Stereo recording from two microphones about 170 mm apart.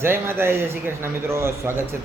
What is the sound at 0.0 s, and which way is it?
A man's voice, 15° right (ahead or behind).